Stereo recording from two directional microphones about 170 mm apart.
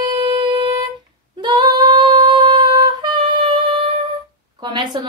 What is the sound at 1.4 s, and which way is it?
Female singing, 25° right (ahead or behind).